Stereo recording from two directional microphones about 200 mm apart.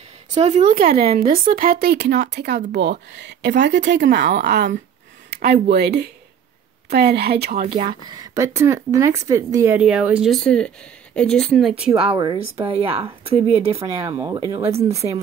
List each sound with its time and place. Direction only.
0.3 s speech: 35° right (ahead or behind); by 7.6 s 50° right (ahead or behind)
7.6 s speech: 25° right (ahead or behind); by 11.7 s centre (ahead or behind)
12.0 s speech: 25° right (ahead or behind)
13.8 s speech: 15° right (ahead or behind)